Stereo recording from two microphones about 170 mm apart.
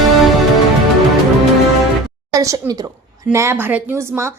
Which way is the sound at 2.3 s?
20° right (ahead or behind).